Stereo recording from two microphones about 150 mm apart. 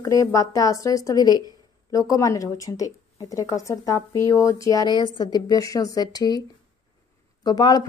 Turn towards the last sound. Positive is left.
turn(degrees=25)  # may be behind; listen again after turning